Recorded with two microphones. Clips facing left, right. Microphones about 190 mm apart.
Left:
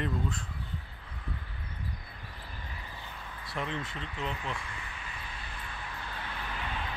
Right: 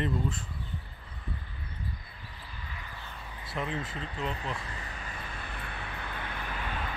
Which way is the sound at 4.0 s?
35° right (ahead or behind).